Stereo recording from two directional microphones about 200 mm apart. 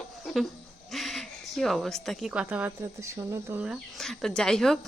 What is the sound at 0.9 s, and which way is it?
Owl, centre (ahead or behind).